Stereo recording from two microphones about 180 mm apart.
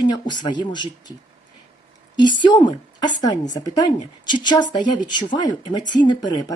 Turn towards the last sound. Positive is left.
turn(degrees=25)  # may be behind; listen again after turning